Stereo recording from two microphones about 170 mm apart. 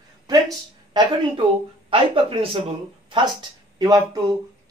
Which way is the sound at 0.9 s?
25° right (ahead or behind).